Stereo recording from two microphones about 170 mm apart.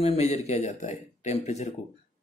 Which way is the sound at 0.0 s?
40° left (ahead or behind).